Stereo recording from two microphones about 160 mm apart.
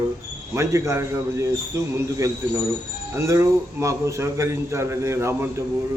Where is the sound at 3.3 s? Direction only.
20° right (ahead or behind).